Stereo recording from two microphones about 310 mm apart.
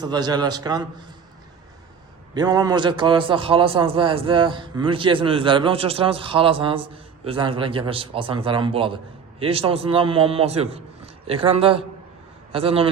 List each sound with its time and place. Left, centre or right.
0.0 s a man's voice: centre
2.3 s a man's voice: centre